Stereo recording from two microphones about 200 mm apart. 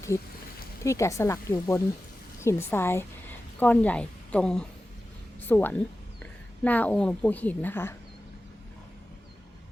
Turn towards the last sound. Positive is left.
turn(degrees=10)  # may be behind; listen again after turning